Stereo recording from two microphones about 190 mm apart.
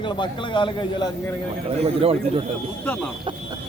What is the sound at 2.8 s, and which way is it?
Speech, 5° left (ahead or behind).